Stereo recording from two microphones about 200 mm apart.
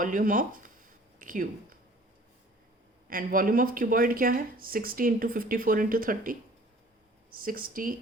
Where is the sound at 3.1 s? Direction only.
45° right (ahead or behind).